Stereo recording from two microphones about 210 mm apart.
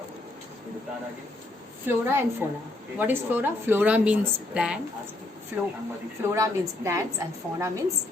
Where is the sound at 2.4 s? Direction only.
10° right (ahead or behind).